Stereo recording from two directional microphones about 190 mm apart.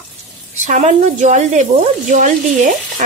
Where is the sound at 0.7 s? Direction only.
40° right (ahead or behind).